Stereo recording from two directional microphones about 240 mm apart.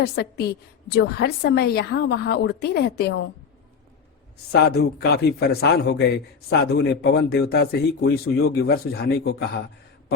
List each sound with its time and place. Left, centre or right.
0.0 s a woman's voice: left
4.5 s a man's voice: left